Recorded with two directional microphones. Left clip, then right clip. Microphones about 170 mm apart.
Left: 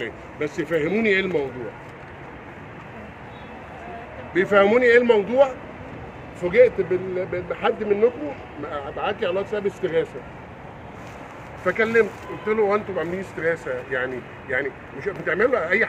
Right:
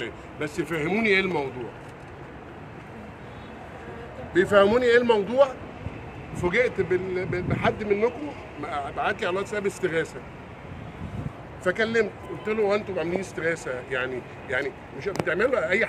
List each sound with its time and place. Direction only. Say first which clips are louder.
0.0 s speech: left 4 dB; 20° right (ahead or behind)
4.3 s speech: left 2 dB; 15° right (ahead or behind)
11.6 s speech: left 4 dB; 30° right (ahead or behind)
12.4 s speech: left 3 dB; 10° right (ahead or behind)